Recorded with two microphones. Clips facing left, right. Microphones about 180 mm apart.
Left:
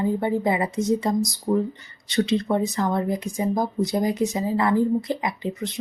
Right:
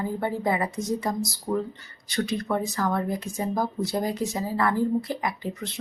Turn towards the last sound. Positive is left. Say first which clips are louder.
# left 3 dB
turn(degrees=20)  # may be behind; listen again after turning